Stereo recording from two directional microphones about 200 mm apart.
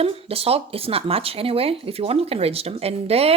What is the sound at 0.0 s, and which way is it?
Speech, 30° right (ahead or behind).